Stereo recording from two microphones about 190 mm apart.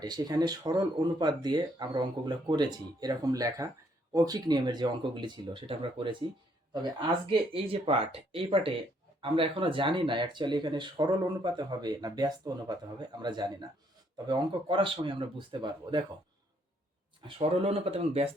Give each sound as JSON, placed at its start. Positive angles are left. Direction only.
{"t": 0.0, "sound": "speech", "side_deg": -20}
{"t": 17.2, "sound": "speech", "side_deg": -30}